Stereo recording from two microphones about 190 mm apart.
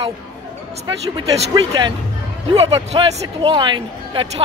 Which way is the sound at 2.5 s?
30° right (ahead or behind).